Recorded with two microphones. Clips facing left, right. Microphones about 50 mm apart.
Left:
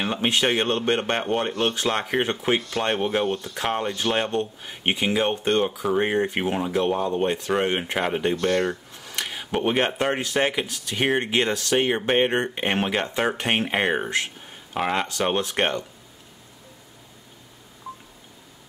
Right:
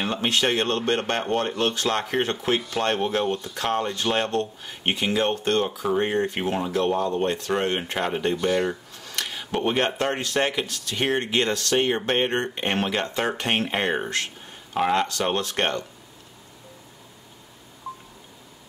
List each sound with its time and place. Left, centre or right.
0.0 s speech: centre
8.4 s speech: centre
8.9 s speech: centre
14.4 s a sound: centre
15.0 s speech: centre